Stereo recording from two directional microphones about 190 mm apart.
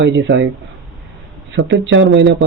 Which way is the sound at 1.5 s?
70° right (ahead or behind).